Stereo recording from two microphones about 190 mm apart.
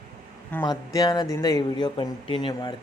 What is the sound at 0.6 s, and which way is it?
Speech, 20° left (ahead or behind).